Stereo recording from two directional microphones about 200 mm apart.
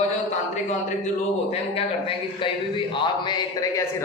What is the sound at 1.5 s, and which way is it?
A man's voice, 30° left (ahead or behind).